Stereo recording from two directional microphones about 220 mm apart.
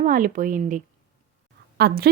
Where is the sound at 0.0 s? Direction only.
40° right (ahead or behind).